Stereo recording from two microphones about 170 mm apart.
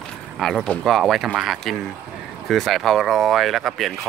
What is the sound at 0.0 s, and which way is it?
Speech, centre (ahead or behind).